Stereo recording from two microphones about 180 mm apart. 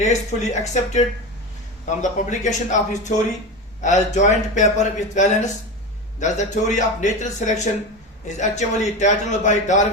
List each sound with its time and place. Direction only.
0.0 s a man's voice: 40° left (ahead or behind)